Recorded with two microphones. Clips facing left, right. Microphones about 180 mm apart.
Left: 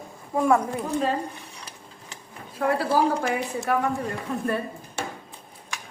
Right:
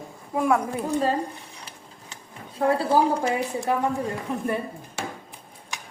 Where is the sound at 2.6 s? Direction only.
25° right (ahead or behind).